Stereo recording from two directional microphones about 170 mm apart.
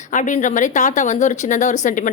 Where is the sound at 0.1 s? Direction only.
45° left (ahead or behind).